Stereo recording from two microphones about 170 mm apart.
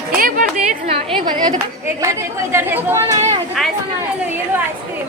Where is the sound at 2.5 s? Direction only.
15° right (ahead or behind).